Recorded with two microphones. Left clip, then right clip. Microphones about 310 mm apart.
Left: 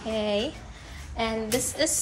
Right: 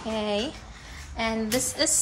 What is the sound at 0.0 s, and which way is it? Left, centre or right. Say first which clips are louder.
A woman's voice: left 1 dB; centre.